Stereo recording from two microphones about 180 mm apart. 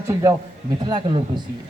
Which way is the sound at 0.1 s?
15° right (ahead or behind).